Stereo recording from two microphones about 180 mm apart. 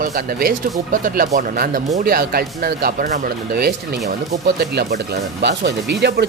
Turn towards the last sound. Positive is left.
turn(degrees=-70)  # may be behind; listen again after turning